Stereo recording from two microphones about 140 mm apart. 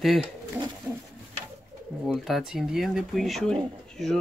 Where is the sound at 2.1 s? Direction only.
Centre (ahead or behind).